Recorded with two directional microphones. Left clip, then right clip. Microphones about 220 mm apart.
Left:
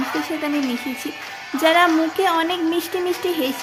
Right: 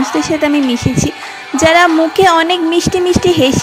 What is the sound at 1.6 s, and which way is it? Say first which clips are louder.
Speech: right 7 dB; 35° right (ahead or behind).